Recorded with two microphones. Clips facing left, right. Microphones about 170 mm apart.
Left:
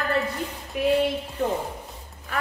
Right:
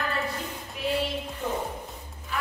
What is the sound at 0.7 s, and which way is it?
Speech, 55° left (ahead or behind).